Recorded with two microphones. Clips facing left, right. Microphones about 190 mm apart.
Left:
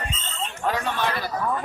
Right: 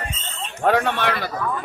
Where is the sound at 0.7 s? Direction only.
65° right (ahead or behind).